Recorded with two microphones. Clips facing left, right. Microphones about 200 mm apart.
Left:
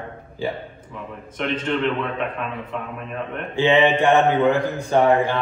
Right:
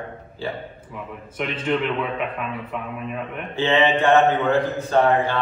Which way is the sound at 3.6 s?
15° left (ahead or behind).